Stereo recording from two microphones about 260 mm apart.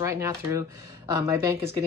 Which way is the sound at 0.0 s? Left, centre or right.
Centre.